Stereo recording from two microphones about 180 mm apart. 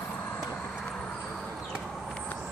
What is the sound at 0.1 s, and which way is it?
Vehicle, 10° left (ahead or behind).